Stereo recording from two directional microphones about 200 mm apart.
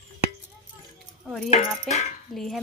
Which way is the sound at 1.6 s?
35° left (ahead or behind).